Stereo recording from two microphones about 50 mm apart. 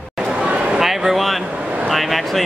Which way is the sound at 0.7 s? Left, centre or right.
Centre.